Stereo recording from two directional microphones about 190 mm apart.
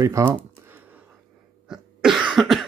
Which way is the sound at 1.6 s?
5° right (ahead or behind).